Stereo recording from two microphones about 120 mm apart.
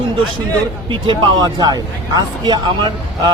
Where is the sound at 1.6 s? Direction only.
35° right (ahead or behind).